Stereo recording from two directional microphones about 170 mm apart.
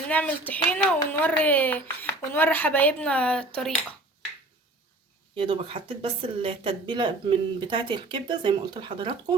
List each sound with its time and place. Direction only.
0.1 s speech: 10° left (ahead or behind)
5.4 s speech: 30° right (ahead or behind)